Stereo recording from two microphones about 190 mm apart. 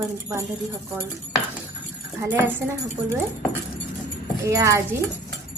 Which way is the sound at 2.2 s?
15° right (ahead or behind).